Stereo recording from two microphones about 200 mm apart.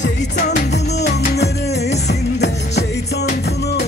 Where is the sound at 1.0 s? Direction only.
55° left (ahead or behind).